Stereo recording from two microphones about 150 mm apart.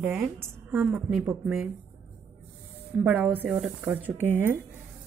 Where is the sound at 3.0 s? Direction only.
10° right (ahead or behind).